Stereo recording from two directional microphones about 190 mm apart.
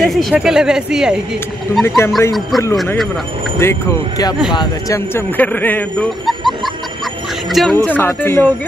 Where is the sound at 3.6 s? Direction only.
15° left (ahead or behind).